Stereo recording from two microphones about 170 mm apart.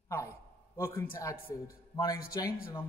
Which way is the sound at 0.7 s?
15° left (ahead or behind).